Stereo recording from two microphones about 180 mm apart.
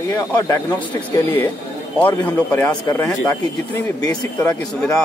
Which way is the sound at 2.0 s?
10° left (ahead or behind).